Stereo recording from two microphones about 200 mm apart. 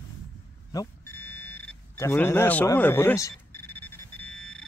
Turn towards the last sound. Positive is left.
turn(degrees=5)  # may be behind; listen again after turning